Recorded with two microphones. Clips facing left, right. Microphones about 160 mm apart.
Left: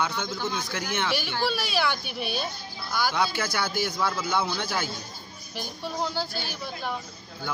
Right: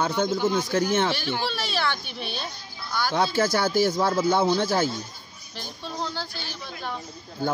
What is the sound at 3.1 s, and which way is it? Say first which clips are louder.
A man's voice: right 5 dB; 35° right (ahead or behind).